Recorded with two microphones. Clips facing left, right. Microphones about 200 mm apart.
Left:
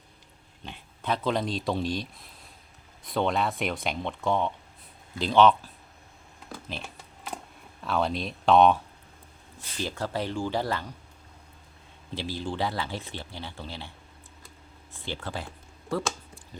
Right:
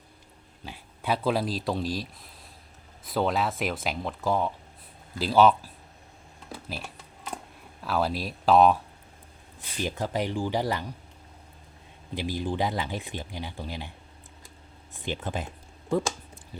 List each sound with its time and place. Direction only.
0.6 s speech: 10° right (ahead or behind)
6.5 s typing: 5° right (ahead or behind)
7.8 s speech: 5° right (ahead or behind)
9.7 s speech: 15° right (ahead or behind)
12.1 s speech: 15° right (ahead or behind)
14.9 s a sound: 20° right (ahead or behind)